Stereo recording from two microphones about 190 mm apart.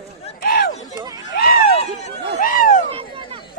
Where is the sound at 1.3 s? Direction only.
55° left (ahead or behind).